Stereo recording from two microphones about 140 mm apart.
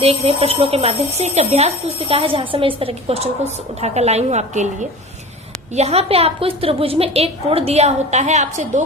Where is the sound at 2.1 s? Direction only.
40° right (ahead or behind).